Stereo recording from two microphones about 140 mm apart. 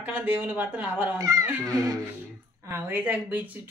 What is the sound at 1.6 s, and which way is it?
Speech, 5° left (ahead or behind).